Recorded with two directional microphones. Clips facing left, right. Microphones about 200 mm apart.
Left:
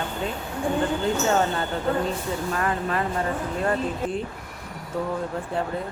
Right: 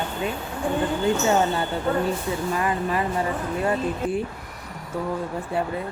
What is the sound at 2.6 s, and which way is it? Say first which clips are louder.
Speech: right 1 dB; 10° right (ahead or behind).